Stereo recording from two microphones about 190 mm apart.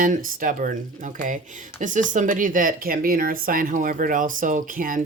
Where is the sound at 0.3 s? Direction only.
45° right (ahead or behind).